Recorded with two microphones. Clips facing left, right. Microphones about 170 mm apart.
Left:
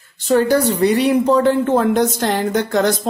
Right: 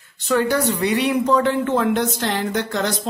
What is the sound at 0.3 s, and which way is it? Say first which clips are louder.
Speech: left 4 dB; 35° left (ahead or behind).